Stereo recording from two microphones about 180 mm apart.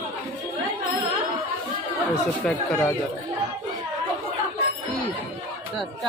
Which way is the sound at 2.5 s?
5° left (ahead or behind).